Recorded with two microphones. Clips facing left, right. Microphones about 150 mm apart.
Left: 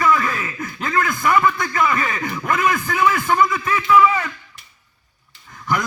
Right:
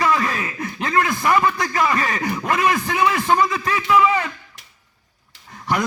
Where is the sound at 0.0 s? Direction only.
30° right (ahead or behind).